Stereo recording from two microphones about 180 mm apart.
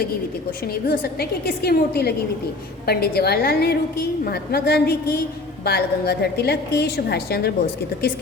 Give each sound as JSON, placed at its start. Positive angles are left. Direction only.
{"t": 0.7, "sound": "a woman's voice", "side_deg": 60}